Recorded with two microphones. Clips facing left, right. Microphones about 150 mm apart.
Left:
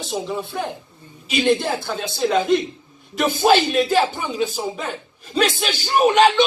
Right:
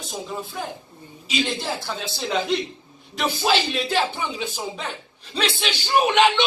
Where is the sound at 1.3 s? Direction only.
55° left (ahead or behind).